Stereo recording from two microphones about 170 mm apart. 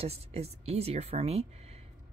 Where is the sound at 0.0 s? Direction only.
35° right (ahead or behind).